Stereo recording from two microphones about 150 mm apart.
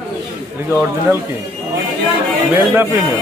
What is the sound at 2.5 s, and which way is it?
Speech, 10° right (ahead or behind).